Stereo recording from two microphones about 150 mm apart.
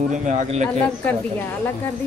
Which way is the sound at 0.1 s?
55° right (ahead or behind).